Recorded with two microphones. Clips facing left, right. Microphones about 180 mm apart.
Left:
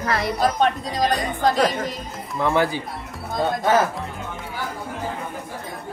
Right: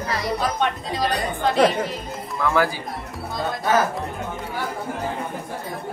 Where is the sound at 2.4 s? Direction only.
25° left (ahead or behind).